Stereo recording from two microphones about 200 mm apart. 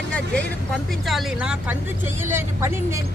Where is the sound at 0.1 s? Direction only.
5° left (ahead or behind).